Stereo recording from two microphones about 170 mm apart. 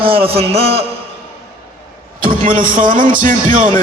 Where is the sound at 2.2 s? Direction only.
55° right (ahead or behind).